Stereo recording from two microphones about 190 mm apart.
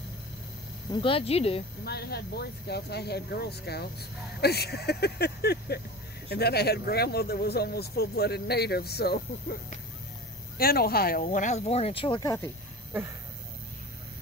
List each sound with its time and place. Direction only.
1.0 s speech: 30° left (ahead or behind)
1.9 s speech: 55° left (ahead or behind)
10.6 s speech: 55° left (ahead or behind)
11.2 s speech: 40° left (ahead or behind); by 12.4 s 20° left (ahead or behind)